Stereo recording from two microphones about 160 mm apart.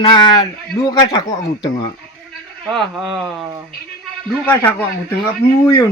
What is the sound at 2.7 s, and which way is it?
Speech, centre (ahead or behind).